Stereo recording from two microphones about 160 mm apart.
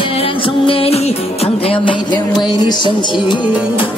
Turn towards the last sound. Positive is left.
turn(degrees=30)  # may be behind; listen again after turning